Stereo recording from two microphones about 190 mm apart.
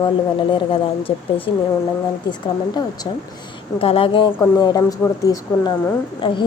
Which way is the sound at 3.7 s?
30° left (ahead or behind).